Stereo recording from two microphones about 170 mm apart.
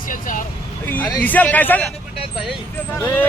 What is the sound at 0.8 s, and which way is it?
Speech, 10° left (ahead or behind).